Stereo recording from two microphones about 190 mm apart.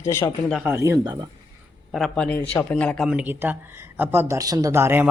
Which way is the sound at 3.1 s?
10° right (ahead or behind).